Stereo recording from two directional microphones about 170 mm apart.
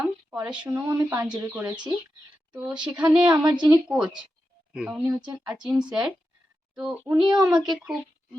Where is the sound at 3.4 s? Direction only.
25° right (ahead or behind).